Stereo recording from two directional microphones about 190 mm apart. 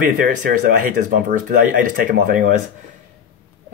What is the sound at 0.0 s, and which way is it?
Speech, 45° right (ahead or behind).